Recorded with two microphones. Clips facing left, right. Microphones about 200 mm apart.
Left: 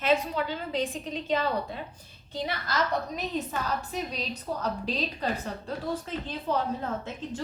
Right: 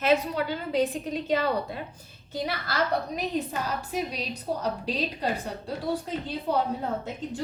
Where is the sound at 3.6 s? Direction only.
10° right (ahead or behind).